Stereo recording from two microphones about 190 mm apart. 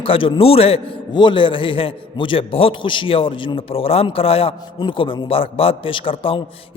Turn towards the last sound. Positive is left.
turn(degrees=30)  # may be behind; listen again after turning